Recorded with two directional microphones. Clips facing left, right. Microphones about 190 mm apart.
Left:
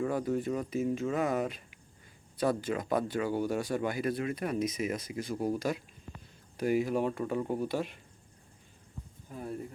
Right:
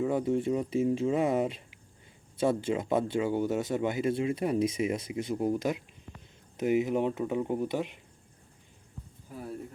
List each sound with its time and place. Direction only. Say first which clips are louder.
0.1 s speech: right 3 dB; 25° right (ahead or behind)
9.3 s speech: left 1 dB; centre (ahead or behind)